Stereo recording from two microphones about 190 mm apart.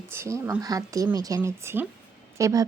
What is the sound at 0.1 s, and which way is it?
Speech, 15° right (ahead or behind).